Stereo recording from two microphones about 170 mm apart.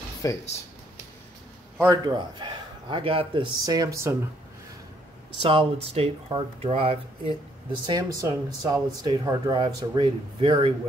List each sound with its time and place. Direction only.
0.2 s speech: 20° left (ahead or behind)
1.8 s speech: 20° right (ahead or behind)
5.4 s speech: 30° right (ahead or behind)